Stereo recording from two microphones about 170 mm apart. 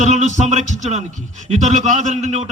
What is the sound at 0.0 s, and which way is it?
A man's voice, 40° right (ahead or behind).